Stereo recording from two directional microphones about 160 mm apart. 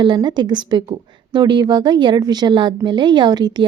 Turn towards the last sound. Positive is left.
turn(degrees=-25)  # may be behind; listen again after turning